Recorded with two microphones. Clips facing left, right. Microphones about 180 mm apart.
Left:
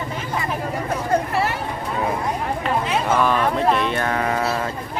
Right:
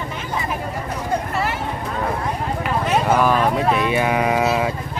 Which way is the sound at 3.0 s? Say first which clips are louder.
Right 2 dB; 10° right (ahead or behind).